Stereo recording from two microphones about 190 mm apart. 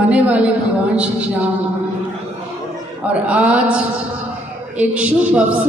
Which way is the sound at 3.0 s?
5° right (ahead or behind).